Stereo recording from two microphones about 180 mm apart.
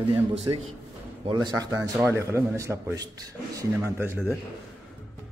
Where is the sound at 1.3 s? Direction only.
25° right (ahead or behind).